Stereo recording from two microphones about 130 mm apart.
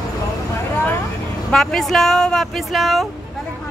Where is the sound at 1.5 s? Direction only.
5° left (ahead or behind).